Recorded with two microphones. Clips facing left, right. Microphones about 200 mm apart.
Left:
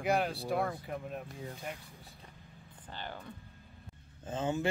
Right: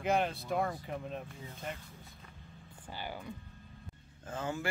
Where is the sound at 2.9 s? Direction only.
10° right (ahead or behind).